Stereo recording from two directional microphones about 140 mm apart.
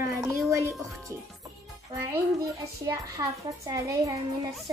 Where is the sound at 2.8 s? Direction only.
25° right (ahead or behind).